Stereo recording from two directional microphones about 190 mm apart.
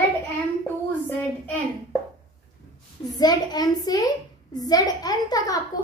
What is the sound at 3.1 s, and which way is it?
A woman's voice, 20° left (ahead or behind).